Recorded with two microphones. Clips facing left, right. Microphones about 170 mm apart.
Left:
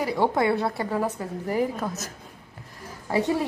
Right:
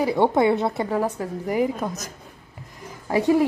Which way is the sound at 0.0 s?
20° right (ahead or behind).